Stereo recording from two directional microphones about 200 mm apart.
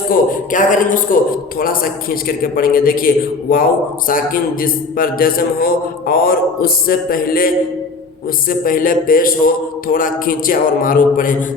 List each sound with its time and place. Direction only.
0.1 s a man's voice: 40° left (ahead or behind)